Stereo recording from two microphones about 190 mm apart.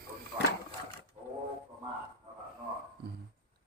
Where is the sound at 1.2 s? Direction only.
30° right (ahead or behind).